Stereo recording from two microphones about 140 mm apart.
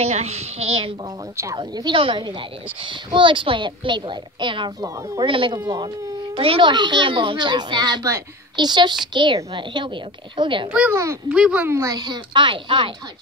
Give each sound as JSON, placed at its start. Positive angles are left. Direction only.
{"t": 0.0, "sound": "a child's voice", "side_deg": -50}
{"t": 1.3, "sound": "a child's voice", "side_deg": -20}
{"t": 1.6, "sound": "a child's voice", "side_deg": -35}
{"t": 10.9, "sound": "a child's voice", "side_deg": -20}
{"t": 11.2, "sound": "speech", "side_deg": -5}
{"t": 11.7, "sound": "a child's voice", "side_deg": -25}